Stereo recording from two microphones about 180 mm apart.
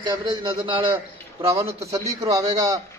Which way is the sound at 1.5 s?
15° right (ahead or behind).